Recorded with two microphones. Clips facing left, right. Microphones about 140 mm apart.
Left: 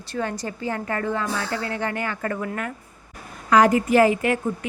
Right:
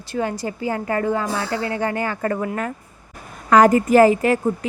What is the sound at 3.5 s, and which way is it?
A woman's voice, 45° right (ahead or behind).